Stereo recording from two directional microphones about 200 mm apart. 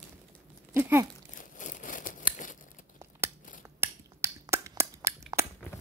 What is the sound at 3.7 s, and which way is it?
Finger snapping, 10° right (ahead or behind).